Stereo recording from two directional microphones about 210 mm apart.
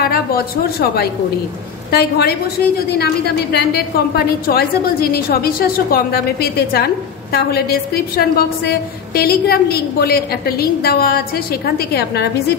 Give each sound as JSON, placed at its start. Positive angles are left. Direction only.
{"t": 0.0, "sound": "a woman's voice", "side_deg": 45}